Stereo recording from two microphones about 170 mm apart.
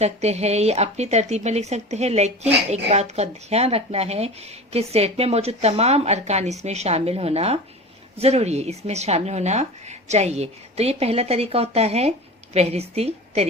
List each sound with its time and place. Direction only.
0.0 s speech: 40° right (ahead or behind)